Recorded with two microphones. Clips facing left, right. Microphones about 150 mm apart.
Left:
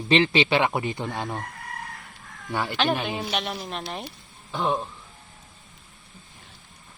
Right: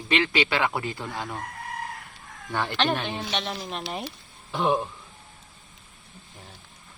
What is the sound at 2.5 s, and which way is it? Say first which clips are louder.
Speech: left 1 dB; 10° left (ahead or behind).